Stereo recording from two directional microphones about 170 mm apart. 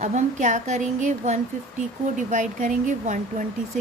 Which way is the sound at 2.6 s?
50° right (ahead or behind).